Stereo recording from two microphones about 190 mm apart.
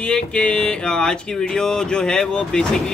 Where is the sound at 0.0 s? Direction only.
5° left (ahead or behind).